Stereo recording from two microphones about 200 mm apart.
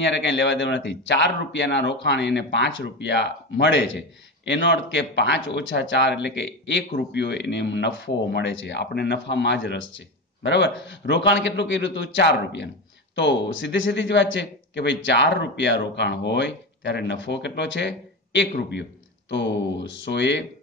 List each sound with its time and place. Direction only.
0.0 s speech: 65° left (ahead or behind)